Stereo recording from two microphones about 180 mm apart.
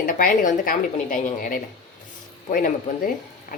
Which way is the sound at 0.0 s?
50° left (ahead or behind).